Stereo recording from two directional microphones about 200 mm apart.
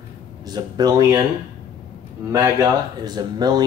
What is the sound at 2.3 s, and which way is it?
Speech, 15° right (ahead or behind).